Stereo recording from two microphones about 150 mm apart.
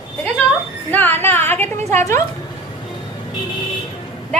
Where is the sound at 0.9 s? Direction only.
10° left (ahead or behind).